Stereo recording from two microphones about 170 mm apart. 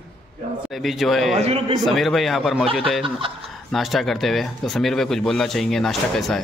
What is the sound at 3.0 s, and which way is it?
Speech, 30° right (ahead or behind).